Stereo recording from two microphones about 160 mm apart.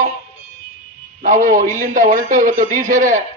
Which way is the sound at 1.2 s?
55° right (ahead or behind).